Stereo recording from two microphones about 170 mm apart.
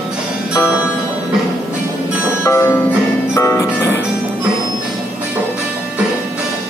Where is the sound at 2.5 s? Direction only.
15° left (ahead or behind).